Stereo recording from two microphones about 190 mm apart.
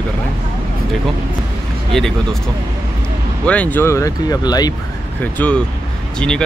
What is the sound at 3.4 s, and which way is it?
Speech, 5° left (ahead or behind).